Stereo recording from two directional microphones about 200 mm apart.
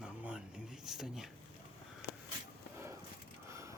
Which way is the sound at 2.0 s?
55° left (ahead or behind).